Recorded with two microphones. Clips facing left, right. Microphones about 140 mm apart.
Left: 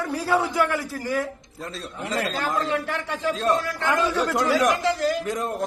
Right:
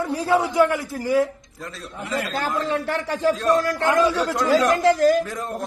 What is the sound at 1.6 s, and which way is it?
Speech, 30° left (ahead or behind).